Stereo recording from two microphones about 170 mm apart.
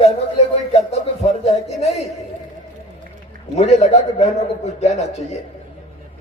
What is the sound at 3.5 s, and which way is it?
A man's voice, 40° left (ahead or behind).